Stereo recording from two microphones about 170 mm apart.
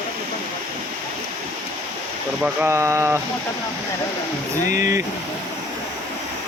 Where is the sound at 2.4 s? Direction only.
15° right (ahead or behind).